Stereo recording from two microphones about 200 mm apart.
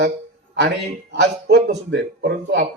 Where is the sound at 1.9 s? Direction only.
60° right (ahead or behind).